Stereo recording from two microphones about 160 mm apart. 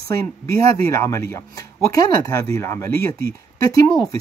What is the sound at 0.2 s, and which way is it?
Speech, 20° left (ahead or behind).